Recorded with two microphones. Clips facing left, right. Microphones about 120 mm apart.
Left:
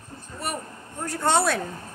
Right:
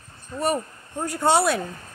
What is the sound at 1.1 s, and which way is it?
Speech, 10° right (ahead or behind).